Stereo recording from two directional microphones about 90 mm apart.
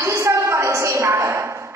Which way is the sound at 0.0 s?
30° right (ahead or behind).